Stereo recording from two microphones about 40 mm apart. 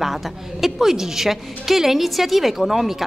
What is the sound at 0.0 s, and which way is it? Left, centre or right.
A woman's voice, centre.